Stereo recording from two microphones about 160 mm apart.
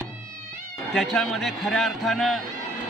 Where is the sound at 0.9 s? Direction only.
5° left (ahead or behind).